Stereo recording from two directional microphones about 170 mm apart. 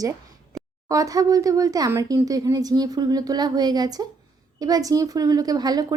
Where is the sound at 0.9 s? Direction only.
20° right (ahead or behind).